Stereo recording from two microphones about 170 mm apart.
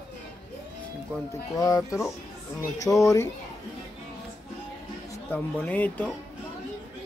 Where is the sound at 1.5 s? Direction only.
20° left (ahead or behind).